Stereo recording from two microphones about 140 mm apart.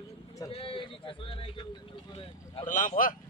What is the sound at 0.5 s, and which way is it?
A man's voice, 40° left (ahead or behind).